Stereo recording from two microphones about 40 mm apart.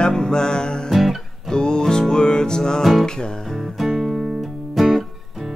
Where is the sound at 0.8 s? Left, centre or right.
Centre.